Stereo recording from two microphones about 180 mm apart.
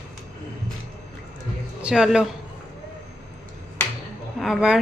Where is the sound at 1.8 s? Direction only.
5° right (ahead or behind).